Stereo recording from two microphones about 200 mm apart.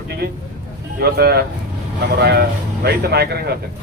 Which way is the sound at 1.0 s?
50° right (ahead or behind).